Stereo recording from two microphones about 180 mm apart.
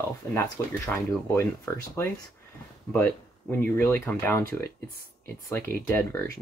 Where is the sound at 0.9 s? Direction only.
15° left (ahead or behind).